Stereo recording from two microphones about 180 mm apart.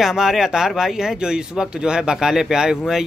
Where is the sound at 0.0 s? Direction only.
Centre (ahead or behind).